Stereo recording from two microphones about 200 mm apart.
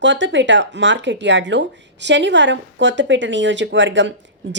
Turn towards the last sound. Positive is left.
turn(degrees=-65)  # may be behind; listen again after turning